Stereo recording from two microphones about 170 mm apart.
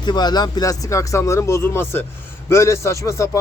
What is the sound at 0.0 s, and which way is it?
A man's voice, 25° left (ahead or behind).